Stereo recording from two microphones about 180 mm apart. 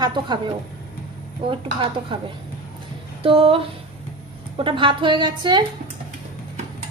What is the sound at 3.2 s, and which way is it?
A woman's voice, 30° right (ahead or behind).